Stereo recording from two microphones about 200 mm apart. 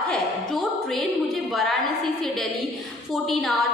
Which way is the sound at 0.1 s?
Centre (ahead or behind).